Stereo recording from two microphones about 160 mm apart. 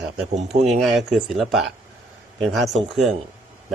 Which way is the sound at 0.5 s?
45° right (ahead or behind).